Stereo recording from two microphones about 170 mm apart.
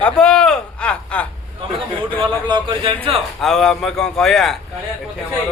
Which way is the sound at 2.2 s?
30° right (ahead or behind).